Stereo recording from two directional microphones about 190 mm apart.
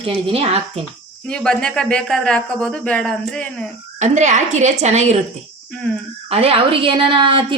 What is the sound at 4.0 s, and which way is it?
Speech, 40° right (ahead or behind).